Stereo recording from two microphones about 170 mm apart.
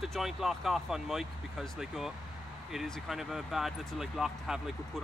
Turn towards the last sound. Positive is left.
turn(degrees=0)  # may be behind; listen again after turning